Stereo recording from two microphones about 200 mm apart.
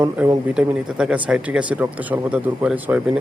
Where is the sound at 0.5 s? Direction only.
5° right (ahead or behind).